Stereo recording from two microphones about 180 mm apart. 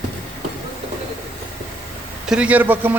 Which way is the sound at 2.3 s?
5° right (ahead or behind).